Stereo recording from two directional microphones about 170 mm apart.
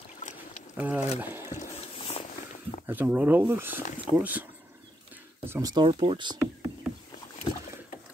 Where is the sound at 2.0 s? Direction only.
35° left (ahead or behind).